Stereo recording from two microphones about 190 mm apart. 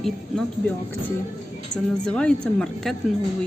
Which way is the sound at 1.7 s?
40° left (ahead or behind).